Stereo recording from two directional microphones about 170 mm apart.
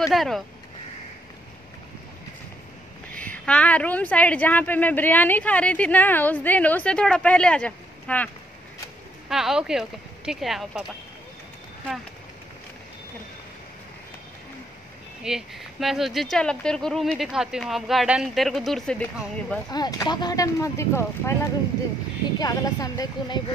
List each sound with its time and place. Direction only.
0.0 s speech: centre (ahead or behind)
3.2 s a woman's voice: 5° left (ahead or behind)
9.3 s speech: 5° right (ahead or behind)
15.2 s speech: centre (ahead or behind)
19.7 s speech: 25° left (ahead or behind)
22.4 s speech: 20° left (ahead or behind)